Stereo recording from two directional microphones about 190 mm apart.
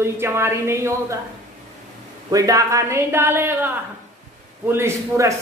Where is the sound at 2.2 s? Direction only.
20° right (ahead or behind).